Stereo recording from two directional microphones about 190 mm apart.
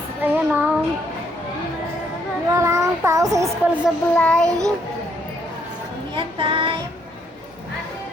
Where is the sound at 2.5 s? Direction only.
15° right (ahead or behind).